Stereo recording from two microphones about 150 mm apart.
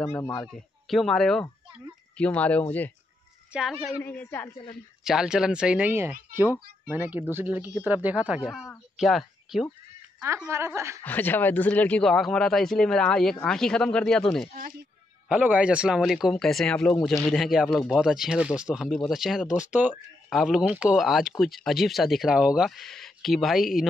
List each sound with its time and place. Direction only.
0.1 s speech: 25° left (ahead or behind)
0.5 s speech: centre (ahead or behind)
3.5 s speech: 5° right (ahead or behind)
4.0 s speech: 15° left (ahead or behind)
5.0 s speech: 5° right (ahead or behind)
10.5 s speech: 15° right (ahead or behind)
11.1 s speech: 10° left (ahead or behind)
15.2 s speech: 10° right (ahead or behind)